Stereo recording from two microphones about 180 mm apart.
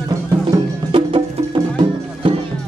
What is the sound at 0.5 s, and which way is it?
Music, 25° right (ahead or behind).